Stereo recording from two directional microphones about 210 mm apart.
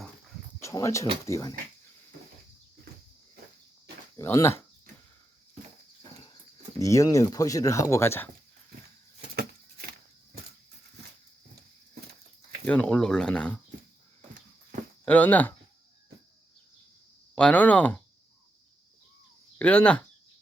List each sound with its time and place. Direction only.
0.6 s speech: 15° left (ahead or behind)
4.2 s speech: 15° left (ahead or behind)
6.7 s speech: 15° left (ahead or behind)
9.3 s a sound: 50° right (ahead or behind)
12.6 s speech: 5° left (ahead or behind)
15.0 s speech: 5° left (ahead or behind)
17.3 s speech: 5° left (ahead or behind)
19.5 s speech: 5° left (ahead or behind)